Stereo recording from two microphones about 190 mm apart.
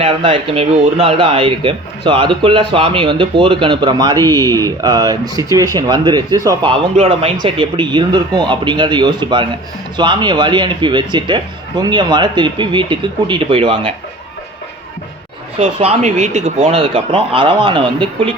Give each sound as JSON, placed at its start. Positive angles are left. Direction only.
{"t": 0.0, "sound": "speech", "side_deg": -30}
{"t": 4.2, "sound": "a man's voice", "side_deg": 15}
{"t": 4.5, "sound": "speech", "side_deg": -20}
{"t": 15.5, "sound": "speech", "side_deg": -35}